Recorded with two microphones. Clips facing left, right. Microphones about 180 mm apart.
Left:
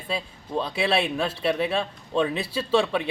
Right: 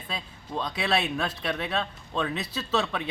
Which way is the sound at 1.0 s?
30° left (ahead or behind).